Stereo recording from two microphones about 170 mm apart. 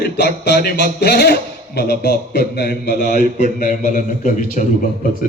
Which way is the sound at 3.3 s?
50° left (ahead or behind).